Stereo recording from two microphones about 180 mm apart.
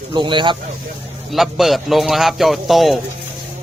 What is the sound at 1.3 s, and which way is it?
A man's voice, centre (ahead or behind).